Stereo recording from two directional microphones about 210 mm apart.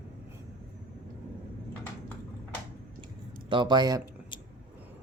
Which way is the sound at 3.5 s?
20° right (ahead or behind).